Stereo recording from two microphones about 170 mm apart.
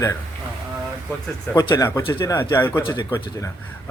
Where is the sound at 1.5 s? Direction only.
20° left (ahead or behind).